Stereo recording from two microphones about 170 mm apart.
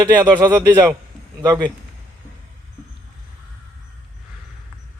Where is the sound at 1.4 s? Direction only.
20° right (ahead or behind).